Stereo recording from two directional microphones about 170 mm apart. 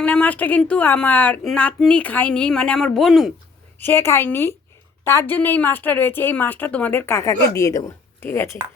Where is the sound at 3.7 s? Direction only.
15° left (ahead or behind).